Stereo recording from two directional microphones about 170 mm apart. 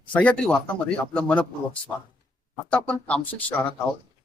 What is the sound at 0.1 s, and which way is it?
Speech, 5° left (ahead or behind).